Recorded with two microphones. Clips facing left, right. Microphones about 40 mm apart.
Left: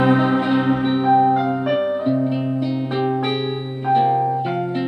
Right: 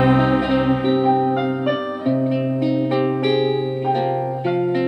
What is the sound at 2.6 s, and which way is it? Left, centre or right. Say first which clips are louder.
Music: right 3 dB; right.